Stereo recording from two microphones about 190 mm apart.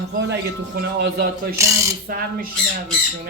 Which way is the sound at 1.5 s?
15° right (ahead or behind).